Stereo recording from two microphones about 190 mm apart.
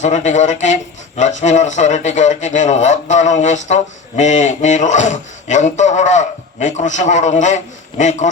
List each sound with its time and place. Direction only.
0.0 s speech: 40° left (ahead or behind)